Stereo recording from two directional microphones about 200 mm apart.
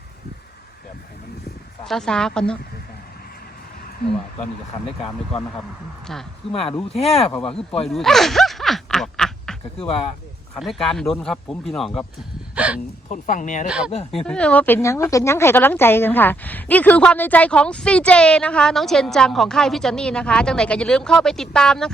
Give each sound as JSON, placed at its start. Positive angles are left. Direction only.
{"t": 1.8, "sound": "a woman's voice", "side_deg": 0}
{"t": 6.5, "sound": "speech", "side_deg": 30}
{"t": 7.9, "sound": "snicker", "side_deg": 0}
{"t": 9.7, "sound": "speech", "side_deg": 30}
{"t": 10.6, "sound": "a woman's voice", "side_deg": 0}
{"t": 13.1, "sound": "speech", "side_deg": 40}
{"t": 13.7, "sound": "a woman's voice", "side_deg": -5}